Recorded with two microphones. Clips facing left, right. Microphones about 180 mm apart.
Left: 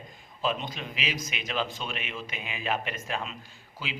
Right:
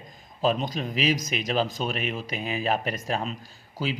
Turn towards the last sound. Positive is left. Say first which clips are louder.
# right 9 dB
turn(degrees=-40)  # may be behind; listen again after turning